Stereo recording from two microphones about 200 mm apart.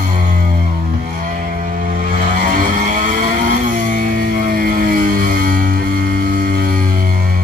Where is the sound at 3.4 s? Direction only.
45° right (ahead or behind).